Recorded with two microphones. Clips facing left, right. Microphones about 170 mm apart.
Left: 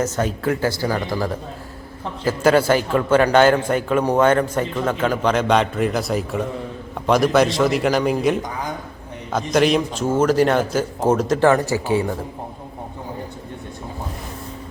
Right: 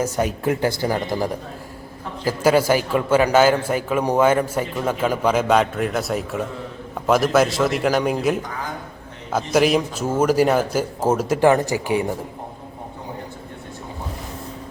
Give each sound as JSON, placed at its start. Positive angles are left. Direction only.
{"t": 0.0, "sound": "speech", "side_deg": -15}
{"t": 2.2, "sound": "a man's voice", "side_deg": -10}